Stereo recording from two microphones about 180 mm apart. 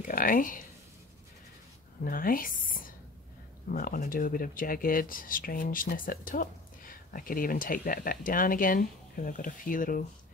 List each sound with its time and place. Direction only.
0.0 s speech: 50° left (ahead or behind)
2.0 s speech: 50° left (ahead or behind)